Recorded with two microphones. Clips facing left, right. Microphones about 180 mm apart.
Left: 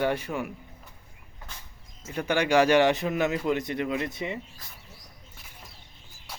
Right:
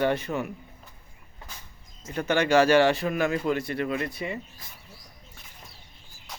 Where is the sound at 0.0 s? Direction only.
10° left (ahead or behind).